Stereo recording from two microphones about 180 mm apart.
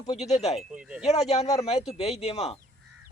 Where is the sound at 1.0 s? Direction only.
35° left (ahead or behind).